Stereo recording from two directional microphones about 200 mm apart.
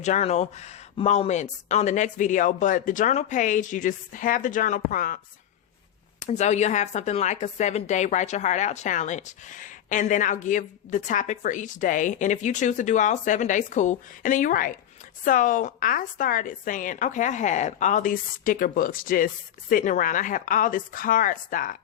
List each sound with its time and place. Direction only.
0.0 s a woman's voice: 35° left (ahead or behind)